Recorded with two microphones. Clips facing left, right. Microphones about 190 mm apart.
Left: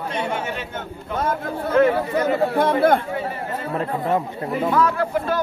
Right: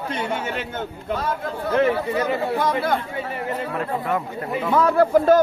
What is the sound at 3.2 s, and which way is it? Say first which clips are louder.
Speech: even; 30° left (ahead or behind).